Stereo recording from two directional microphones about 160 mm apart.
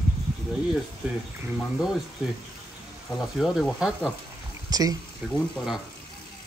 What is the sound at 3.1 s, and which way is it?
Speech, centre (ahead or behind).